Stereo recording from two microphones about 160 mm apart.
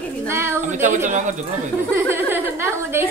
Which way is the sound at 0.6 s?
50° right (ahead or behind).